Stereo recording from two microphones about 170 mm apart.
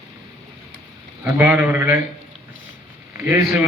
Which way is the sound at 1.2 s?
15° right (ahead or behind).